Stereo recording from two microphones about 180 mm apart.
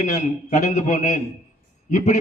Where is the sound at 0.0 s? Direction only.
40° left (ahead or behind).